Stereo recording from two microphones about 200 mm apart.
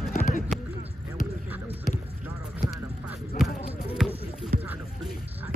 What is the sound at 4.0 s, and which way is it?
Music, centre (ahead or behind).